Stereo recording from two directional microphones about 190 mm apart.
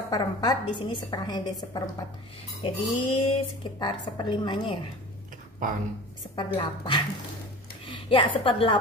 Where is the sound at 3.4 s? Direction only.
25° left (ahead or behind).